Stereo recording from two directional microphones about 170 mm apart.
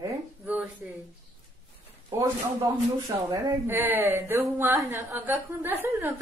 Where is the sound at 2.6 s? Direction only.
25° right (ahead or behind).